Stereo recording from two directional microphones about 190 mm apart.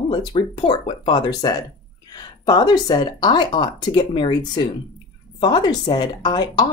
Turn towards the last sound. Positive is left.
turn(degrees=20)  # may be behind; listen again after turning